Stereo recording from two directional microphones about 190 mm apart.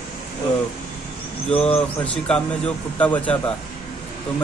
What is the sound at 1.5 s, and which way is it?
Speech, 30° left (ahead or behind).